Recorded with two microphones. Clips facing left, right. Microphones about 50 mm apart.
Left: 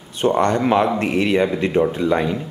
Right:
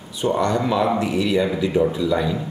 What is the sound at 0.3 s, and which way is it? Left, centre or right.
A man's voice, left.